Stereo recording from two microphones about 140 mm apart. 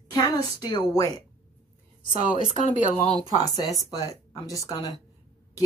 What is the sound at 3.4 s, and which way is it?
Speech, 25° left (ahead or behind).